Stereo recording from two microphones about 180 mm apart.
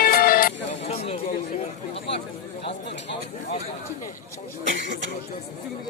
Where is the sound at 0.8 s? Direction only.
35° left (ahead or behind).